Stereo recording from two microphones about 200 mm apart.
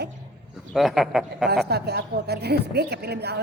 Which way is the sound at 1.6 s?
55° right (ahead or behind).